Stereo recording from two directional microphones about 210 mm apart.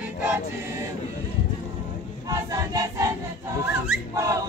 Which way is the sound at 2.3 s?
15° right (ahead or behind).